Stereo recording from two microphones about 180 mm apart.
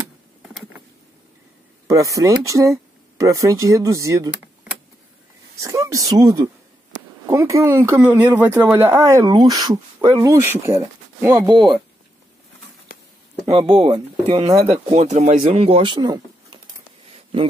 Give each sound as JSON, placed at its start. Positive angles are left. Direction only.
{"t": 1.9, "sound": "speech", "side_deg": -20}
{"t": 5.6, "sound": "speech", "side_deg": -20}
{"t": 11.3, "sound": "speech", "side_deg": -25}
{"t": 13.5, "sound": "speech", "side_deg": -35}